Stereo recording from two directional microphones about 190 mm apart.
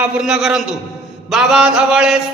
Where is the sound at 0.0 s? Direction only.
5° right (ahead or behind).